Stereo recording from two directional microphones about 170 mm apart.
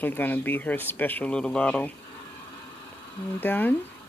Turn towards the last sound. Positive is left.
turn(degrees=10)  # may be behind; listen again after turning